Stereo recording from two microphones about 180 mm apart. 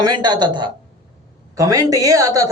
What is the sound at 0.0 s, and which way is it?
A man's voice, 25° right (ahead or behind).